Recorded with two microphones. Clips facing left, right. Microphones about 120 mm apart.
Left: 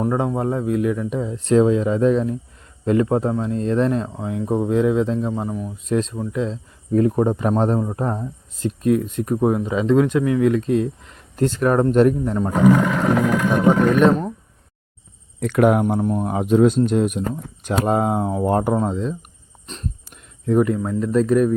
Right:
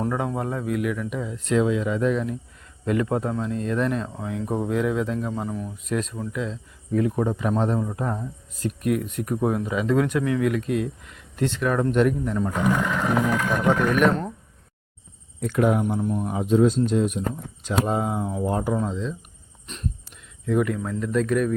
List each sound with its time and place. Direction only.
0.0 s speech: 25° left (ahead or behind)
13.3 s vehicle: 15° left (ahead or behind)
15.4 s speech: 70° left (ahead or behind); by 19.1 s 50° left (ahead or behind)
19.6 s speech: 30° left (ahead or behind)
20.7 s speech: 20° left (ahead or behind)
21.0 s speech: 35° left (ahead or behind)